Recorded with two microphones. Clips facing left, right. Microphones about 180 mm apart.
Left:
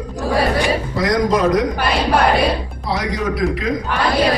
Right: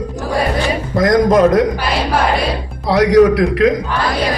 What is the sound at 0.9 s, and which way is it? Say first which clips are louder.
Speech: right 8 dB; 50° right (ahead or behind).